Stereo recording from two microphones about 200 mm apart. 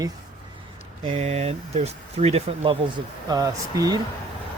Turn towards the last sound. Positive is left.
turn(degrees=-15)  # may be behind; listen again after turning